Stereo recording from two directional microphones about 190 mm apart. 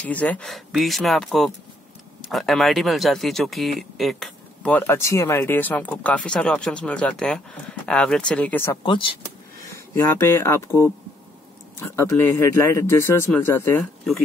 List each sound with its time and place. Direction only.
0.1 s speech: 5° left (ahead or behind)
8.8 s speech: 25° left (ahead or behind)
9.9 s speech: 15° left (ahead or behind)